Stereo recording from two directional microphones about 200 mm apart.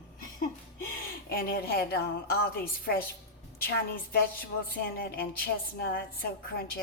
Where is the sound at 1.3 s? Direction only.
50° left (ahead or behind).